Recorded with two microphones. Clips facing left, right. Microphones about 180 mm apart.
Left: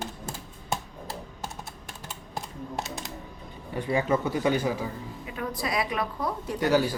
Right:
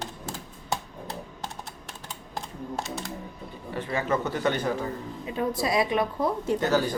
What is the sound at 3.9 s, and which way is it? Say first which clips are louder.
Speech: left 2 dB; 10° left (ahead or behind).